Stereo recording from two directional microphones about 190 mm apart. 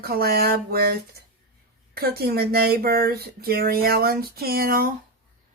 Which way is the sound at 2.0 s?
55° right (ahead or behind).